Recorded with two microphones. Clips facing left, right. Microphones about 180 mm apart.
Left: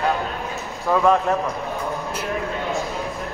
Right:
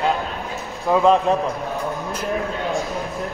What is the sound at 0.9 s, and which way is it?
Speech, 20° right (ahead or behind).